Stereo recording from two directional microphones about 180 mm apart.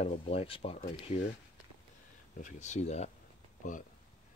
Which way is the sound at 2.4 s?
40° left (ahead or behind).